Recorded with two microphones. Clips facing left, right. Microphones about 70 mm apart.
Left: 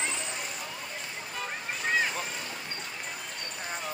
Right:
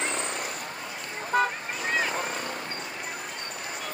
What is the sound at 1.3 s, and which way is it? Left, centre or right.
Vehicle, right.